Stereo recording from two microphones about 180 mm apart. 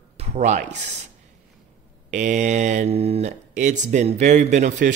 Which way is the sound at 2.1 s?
45° right (ahead or behind).